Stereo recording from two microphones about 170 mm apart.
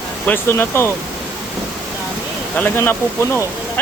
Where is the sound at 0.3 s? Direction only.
15° left (ahead or behind).